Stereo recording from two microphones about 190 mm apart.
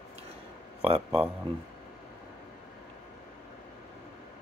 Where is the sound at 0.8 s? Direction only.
30° right (ahead or behind).